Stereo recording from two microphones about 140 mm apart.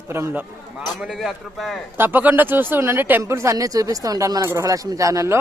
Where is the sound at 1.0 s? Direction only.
Centre (ahead or behind).